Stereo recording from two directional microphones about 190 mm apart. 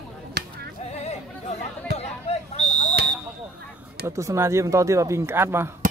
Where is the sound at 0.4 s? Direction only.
60° right (ahead or behind).